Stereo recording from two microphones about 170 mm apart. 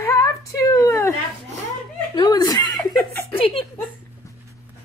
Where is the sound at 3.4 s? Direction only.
35° left (ahead or behind).